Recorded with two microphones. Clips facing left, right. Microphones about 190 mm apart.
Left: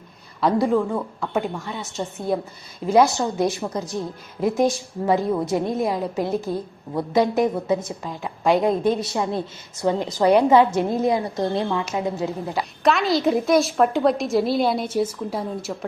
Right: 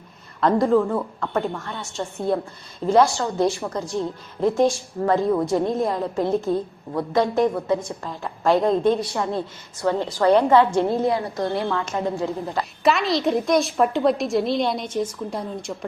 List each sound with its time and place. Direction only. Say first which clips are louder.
0.3 s a woman's voice: right 1 dB; 5° left (ahead or behind)
1.4 s a woman's voice: even; 15° left (ahead or behind)
2.8 s a woman's voice: even; 15° left (ahead or behind)
12.8 s a woman's voice: left 1 dB; centre (ahead or behind)